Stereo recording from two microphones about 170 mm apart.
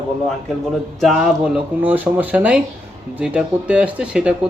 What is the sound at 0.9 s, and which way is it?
Speech, centre (ahead or behind).